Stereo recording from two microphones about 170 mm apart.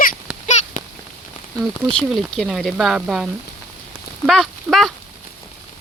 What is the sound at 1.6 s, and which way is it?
Speech, 5° left (ahead or behind).